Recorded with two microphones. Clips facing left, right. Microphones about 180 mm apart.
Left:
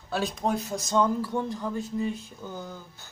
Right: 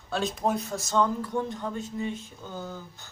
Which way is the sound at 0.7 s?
20° left (ahead or behind).